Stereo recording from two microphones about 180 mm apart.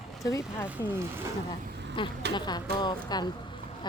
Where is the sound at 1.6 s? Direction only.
65° right (ahead or behind).